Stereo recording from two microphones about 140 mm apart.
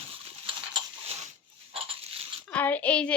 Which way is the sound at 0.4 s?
40° right (ahead or behind).